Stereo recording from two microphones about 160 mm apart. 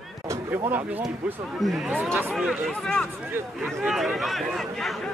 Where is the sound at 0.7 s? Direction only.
10° right (ahead or behind).